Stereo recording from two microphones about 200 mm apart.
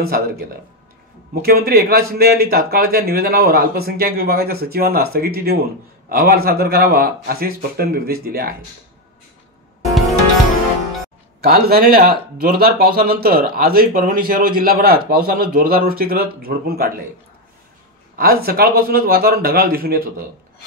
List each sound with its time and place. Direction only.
1.4 s speech: 50° right (ahead or behind)
11.4 s speech: 50° right (ahead or behind)
18.1 s speech: 50° right (ahead or behind)